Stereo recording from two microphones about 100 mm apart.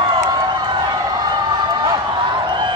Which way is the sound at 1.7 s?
45° right (ahead or behind).